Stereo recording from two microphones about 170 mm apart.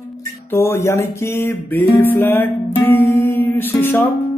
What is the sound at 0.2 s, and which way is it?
Music, 15° left (ahead or behind).